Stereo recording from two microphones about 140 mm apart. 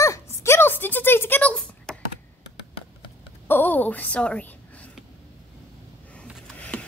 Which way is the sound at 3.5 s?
15° left (ahead or behind).